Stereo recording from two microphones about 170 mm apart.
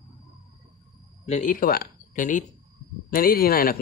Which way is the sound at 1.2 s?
45° left (ahead or behind).